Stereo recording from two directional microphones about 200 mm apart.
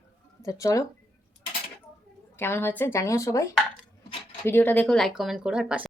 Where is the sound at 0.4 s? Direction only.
15° left (ahead or behind).